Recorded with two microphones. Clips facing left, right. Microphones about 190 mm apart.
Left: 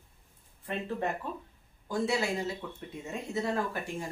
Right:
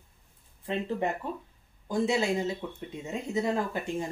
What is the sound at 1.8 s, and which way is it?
Speech, 20° right (ahead or behind).